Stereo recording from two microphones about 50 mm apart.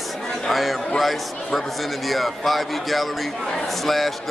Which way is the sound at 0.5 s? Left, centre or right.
Centre.